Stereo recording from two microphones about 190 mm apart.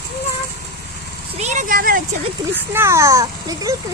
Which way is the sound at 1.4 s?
40° right (ahead or behind).